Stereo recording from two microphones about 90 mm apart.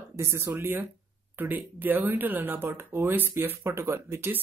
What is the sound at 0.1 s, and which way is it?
Speech, 30° right (ahead or behind).